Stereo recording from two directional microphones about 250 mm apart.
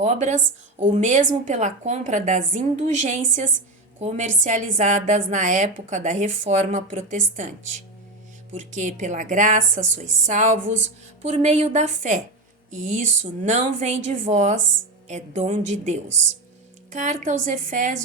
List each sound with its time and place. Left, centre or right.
0.0 s a woman's voice: right